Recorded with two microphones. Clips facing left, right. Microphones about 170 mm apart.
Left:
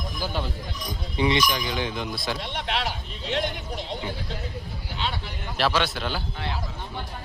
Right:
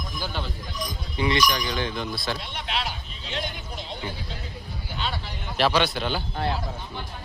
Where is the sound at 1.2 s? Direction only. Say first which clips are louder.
Even; 25° left (ahead or behind).